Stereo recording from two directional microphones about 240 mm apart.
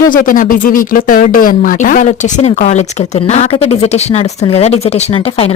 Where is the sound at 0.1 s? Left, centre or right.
Left.